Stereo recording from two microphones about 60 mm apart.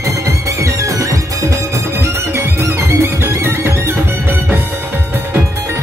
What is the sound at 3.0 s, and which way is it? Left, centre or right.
Music, right.